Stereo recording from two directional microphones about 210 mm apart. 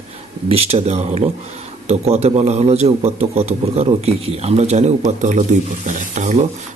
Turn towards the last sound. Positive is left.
turn(degrees=-35)  # may be behind; listen again after turning